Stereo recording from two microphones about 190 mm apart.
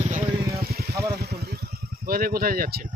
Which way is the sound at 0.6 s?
55° right (ahead or behind).